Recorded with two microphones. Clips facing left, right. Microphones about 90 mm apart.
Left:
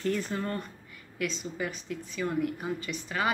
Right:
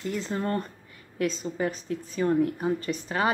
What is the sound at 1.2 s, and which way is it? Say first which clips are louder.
A woman's voice: right 5 dB; 40° right (ahead or behind).